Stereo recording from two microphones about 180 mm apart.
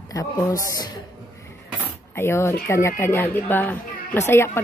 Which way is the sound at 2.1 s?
15° left (ahead or behind).